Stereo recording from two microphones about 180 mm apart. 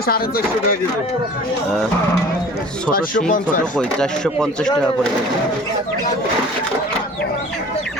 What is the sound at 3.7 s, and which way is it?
Speech, 5° left (ahead or behind).